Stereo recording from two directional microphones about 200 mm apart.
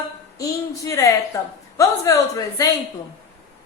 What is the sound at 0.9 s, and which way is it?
A woman's voice, 15° left (ahead or behind).